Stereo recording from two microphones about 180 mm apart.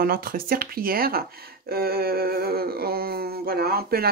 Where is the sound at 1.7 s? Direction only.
60° right (ahead or behind).